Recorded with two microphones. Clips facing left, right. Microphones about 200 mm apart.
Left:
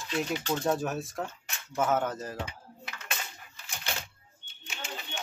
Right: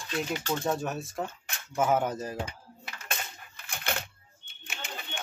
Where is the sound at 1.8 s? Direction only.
10° right (ahead or behind).